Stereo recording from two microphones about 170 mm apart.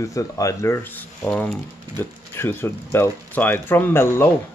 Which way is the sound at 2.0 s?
15° left (ahead or behind).